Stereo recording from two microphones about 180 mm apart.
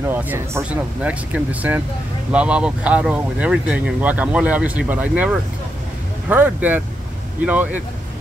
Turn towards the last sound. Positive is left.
turn(degrees=-10)  # may be behind; listen again after turning